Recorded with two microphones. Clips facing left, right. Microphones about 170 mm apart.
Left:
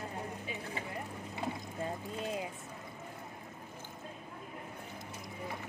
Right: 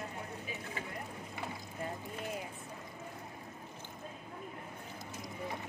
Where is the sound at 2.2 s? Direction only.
20° left (ahead or behind).